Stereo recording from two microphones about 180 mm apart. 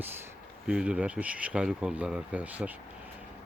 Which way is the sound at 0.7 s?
5° right (ahead or behind).